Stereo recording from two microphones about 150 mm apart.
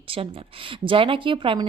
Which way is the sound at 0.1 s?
40° right (ahead or behind).